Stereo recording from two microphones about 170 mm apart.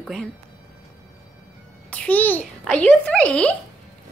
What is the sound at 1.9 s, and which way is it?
A child's voice, 10° left (ahead or behind).